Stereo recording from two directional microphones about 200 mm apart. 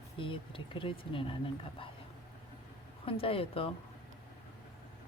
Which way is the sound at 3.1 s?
25° left (ahead or behind).